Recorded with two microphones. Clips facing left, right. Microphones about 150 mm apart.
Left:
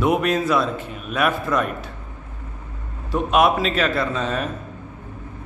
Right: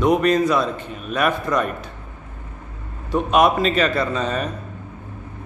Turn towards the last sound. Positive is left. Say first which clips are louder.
# right 1 dB
turn(degrees=0)  # may be behind; listen again after turning